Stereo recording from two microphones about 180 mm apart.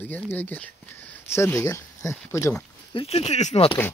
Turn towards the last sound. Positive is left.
turn(degrees=35)  # may be behind; listen again after turning